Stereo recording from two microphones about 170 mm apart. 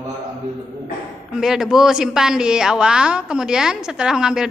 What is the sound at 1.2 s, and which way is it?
A woman's voice, 5° right (ahead or behind).